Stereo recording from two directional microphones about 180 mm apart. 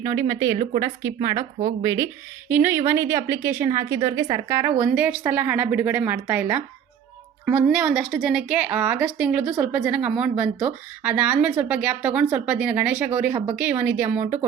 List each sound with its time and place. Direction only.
0.0 s speech: 20° right (ahead or behind)
2.5 s a woman's voice: 10° right (ahead or behind)